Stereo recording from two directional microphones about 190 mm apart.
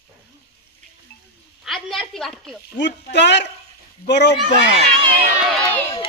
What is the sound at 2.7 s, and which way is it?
A man's voice, 65° left (ahead or behind).